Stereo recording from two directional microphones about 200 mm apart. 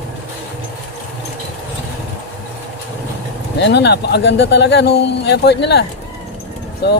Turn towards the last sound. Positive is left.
turn(degrees=55)  # may be behind; listen again after turning